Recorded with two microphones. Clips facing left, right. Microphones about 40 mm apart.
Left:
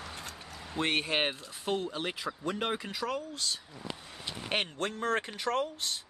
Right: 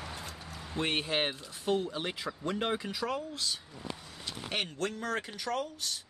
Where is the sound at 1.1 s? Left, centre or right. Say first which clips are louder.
Left 1 dB; centre.